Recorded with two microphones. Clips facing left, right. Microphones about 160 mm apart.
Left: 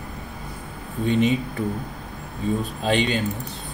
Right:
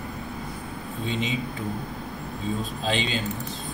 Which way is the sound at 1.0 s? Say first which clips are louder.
Left 9 dB; 55° left (ahead or behind).